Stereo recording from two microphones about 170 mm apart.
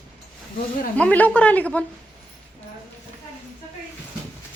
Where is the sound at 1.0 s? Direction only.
10° left (ahead or behind).